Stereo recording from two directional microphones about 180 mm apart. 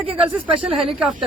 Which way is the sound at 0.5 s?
Centre (ahead or behind).